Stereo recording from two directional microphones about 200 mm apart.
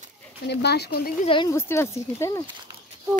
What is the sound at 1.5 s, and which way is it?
Speech, 15° left (ahead or behind).